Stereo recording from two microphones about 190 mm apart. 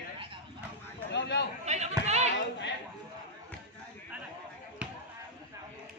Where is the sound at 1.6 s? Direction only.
35° right (ahead or behind).